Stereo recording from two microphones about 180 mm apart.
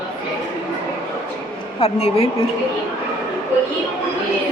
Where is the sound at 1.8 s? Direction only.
35° left (ahead or behind).